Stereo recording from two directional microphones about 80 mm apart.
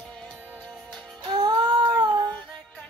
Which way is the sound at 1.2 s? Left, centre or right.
Right.